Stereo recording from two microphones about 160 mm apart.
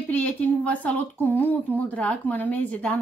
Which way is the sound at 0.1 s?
10° left (ahead or behind).